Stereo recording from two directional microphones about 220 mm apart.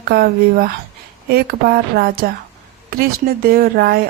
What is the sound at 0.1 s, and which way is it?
Speech, 45° right (ahead or behind).